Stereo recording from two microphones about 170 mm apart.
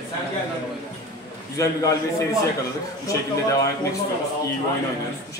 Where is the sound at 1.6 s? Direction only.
20° left (ahead or behind).